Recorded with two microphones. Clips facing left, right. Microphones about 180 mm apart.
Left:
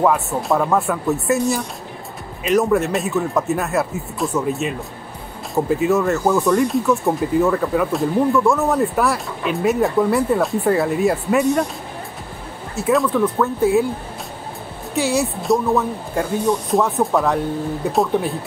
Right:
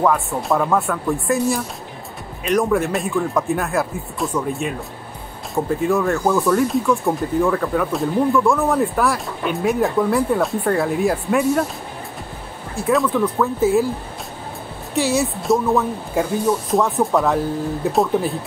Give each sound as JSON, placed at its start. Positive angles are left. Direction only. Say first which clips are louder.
{"t": 0.0, "sound": "speech", "louder": "left 1 dB", "side_deg": 5}
{"t": 12.7, "sound": "speech", "louder": "left 1 dB", "side_deg": 0}
{"t": 15.0, "sound": "speech", "louder": "even", "side_deg": 0}